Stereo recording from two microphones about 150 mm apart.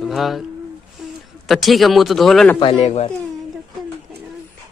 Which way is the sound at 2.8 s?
45° left (ahead or behind).